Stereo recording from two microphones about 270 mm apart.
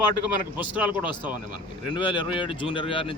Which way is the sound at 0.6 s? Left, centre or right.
Centre.